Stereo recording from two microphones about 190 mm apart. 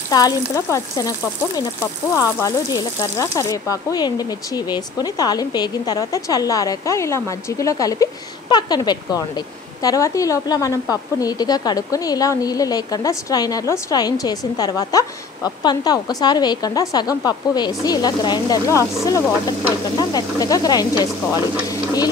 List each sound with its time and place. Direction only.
0.1 s speech: 15° left (ahead or behind)
20.0 s speech: 20° left (ahead or behind)